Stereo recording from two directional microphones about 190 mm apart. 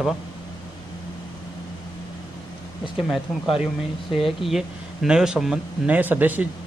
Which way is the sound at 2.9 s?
Centre (ahead or behind).